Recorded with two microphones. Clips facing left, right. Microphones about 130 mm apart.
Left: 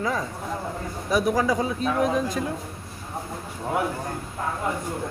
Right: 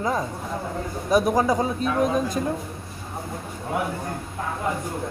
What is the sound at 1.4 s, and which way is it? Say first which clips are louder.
Speech: right 2 dB; 25° right (ahead or behind).